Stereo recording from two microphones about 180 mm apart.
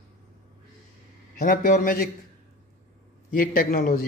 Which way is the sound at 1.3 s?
55° left (ahead or behind).